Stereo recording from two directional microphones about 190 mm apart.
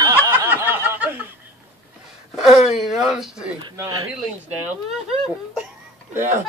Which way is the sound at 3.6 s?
15° right (ahead or behind).